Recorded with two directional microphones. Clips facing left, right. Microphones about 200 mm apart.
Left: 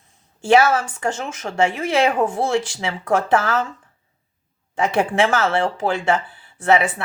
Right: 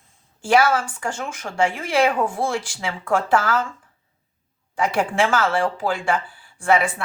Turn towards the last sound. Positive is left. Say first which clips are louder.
# left 2 dB
turn(degrees=20)  # may be behind; listen again after turning